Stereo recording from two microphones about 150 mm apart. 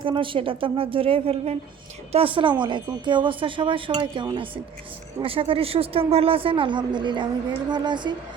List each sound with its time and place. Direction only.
0.0 s a woman's voice: 35° right (ahead or behind)